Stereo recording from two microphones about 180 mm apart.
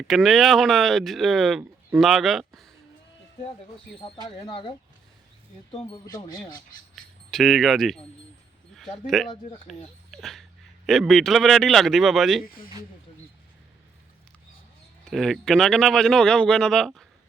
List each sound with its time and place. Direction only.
0.1 s speech: centre (ahead or behind)
4.0 s speech: 30° left (ahead or behind)
6.1 s speech: 20° left (ahead or behind)
6.9 s speech: centre (ahead or behind)
15.1 s speech: centre (ahead or behind)